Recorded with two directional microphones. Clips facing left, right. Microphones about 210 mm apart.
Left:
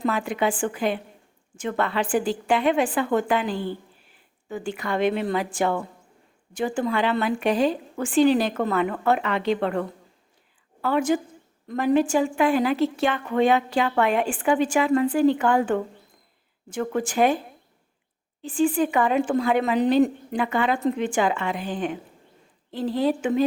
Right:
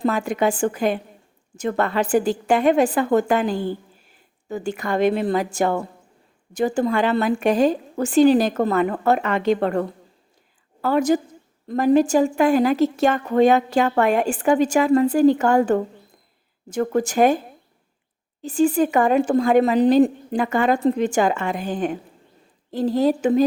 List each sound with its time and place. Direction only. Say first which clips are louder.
0.0 s a woman's voice: right 4 dB; 45° right (ahead or behind)
18.4 s a woman's voice: right 3 dB; 40° right (ahead or behind)